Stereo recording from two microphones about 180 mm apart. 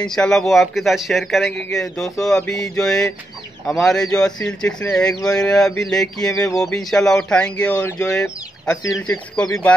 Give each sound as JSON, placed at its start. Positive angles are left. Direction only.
{"t": 0.0, "sound": "speech", "side_deg": 5}
{"t": 6.3, "sound": "speech", "side_deg": 20}
{"t": 6.6, "sound": "speech", "side_deg": 0}